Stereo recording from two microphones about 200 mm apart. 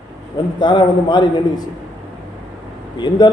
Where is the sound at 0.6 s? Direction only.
20° left (ahead or behind).